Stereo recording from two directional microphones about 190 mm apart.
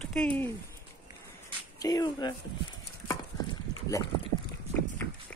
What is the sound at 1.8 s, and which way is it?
Speech, 20° left (ahead or behind).